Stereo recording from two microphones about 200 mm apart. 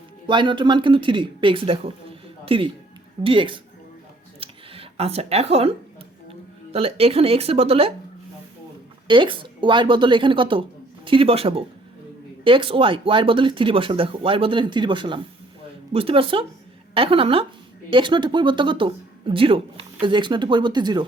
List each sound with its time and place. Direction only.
0.3 s speech: 25° right (ahead or behind)
4.4 s a sound: 30° right (ahead or behind)
6.7 s speech: 30° right (ahead or behind)
9.0 s a woman's voice: 25° right (ahead or behind)